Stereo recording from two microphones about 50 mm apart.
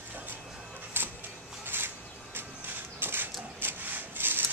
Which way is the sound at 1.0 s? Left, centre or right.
Right.